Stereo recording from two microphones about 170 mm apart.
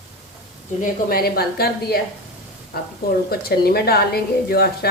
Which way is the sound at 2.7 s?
65° left (ahead or behind).